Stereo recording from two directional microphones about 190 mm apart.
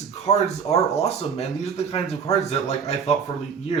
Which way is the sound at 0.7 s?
35° left (ahead or behind).